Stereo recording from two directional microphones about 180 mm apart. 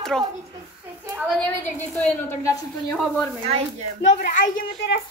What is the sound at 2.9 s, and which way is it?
Speech, centre (ahead or behind).